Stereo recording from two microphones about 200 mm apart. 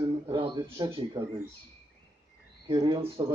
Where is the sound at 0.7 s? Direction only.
25° right (ahead or behind).